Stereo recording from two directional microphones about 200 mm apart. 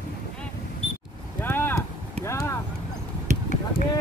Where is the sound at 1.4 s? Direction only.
10° left (ahead or behind).